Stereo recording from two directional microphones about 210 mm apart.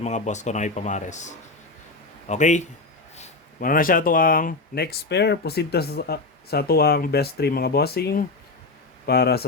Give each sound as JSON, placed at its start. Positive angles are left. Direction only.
{"t": 0.0, "sound": "speech", "side_deg": 35}